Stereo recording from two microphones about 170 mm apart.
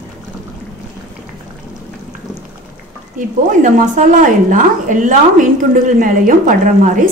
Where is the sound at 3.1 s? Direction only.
50° right (ahead or behind).